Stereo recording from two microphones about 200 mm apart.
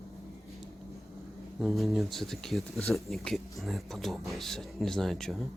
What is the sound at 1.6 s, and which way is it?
Speech, centre (ahead or behind).